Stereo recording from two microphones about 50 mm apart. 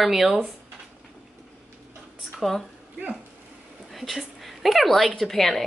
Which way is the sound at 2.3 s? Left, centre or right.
Centre.